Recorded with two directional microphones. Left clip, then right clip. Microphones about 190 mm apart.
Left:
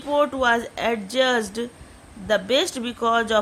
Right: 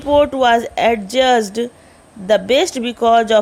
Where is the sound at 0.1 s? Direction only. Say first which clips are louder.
Right 8 dB; 25° right (ahead or behind).